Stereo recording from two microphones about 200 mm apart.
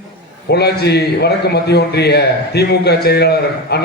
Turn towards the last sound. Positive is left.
turn(degrees=55)  # may be behind; listen again after turning